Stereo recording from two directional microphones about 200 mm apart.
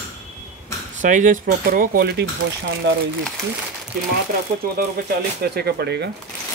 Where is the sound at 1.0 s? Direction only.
40° right (ahead or behind).